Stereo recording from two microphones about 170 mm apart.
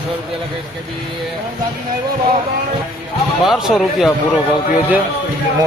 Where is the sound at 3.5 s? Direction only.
Centre (ahead or behind).